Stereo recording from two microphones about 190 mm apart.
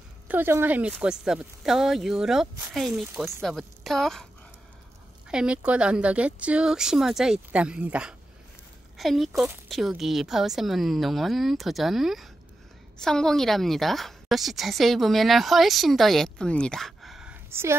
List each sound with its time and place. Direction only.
0.3 s a woman's voice: 10° right (ahead or behind)
3.1 s speech: 15° right (ahead or behind)
3.4 s a woman's voice: centre (ahead or behind)
5.3 s a woman's voice: 5° right (ahead or behind)